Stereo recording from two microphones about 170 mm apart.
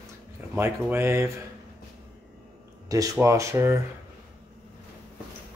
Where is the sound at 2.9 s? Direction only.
20° right (ahead or behind).